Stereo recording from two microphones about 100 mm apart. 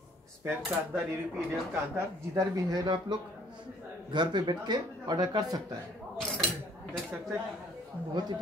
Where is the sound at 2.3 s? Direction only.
45° right (ahead or behind).